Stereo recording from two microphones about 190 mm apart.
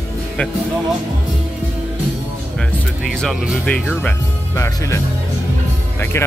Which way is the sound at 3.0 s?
Centre (ahead or behind).